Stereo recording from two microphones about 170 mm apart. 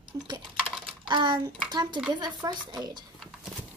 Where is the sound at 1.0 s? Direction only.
30° right (ahead or behind).